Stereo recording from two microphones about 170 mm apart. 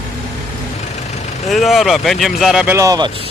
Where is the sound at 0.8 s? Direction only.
40° left (ahead or behind).